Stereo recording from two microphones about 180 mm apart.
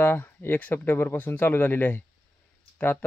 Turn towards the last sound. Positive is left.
turn(degrees=10)  # may be behind; listen again after turning